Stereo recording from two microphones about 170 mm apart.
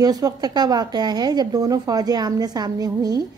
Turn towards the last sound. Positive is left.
turn(degrees=-20)  # may be behind; listen again after turning